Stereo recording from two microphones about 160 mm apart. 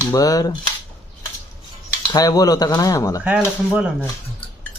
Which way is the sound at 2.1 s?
25° left (ahead or behind).